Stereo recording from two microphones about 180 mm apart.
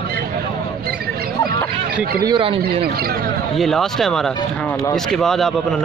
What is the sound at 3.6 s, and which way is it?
Speech, centre (ahead or behind).